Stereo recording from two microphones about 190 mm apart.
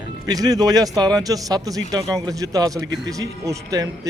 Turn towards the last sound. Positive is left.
turn(degrees=-20)  # may be behind; listen again after turning